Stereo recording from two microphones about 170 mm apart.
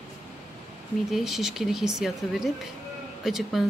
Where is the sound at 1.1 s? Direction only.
Centre (ahead or behind).